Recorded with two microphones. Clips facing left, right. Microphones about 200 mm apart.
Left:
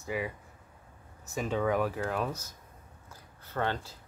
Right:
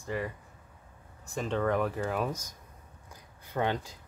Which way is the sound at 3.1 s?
15° right (ahead or behind).